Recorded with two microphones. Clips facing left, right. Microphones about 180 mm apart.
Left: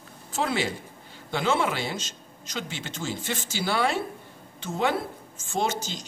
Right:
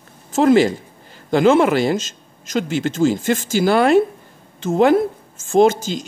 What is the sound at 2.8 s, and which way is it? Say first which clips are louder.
Speech: right 16 dB; 90° right.